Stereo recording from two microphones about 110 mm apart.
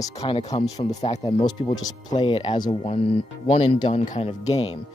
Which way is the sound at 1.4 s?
40° left (ahead or behind).